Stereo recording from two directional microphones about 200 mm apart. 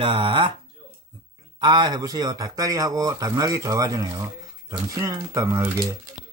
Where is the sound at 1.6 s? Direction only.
20° right (ahead or behind).